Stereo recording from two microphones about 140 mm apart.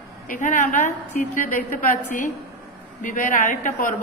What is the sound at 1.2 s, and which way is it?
A woman's voice, 70° left (ahead or behind).